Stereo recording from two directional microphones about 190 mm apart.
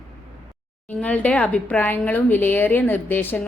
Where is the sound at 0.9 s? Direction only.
5° left (ahead or behind).